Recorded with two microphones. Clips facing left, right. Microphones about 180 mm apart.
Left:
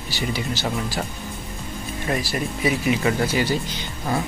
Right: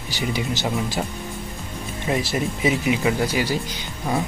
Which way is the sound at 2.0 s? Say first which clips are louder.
Right 2 dB; 20° right (ahead or behind).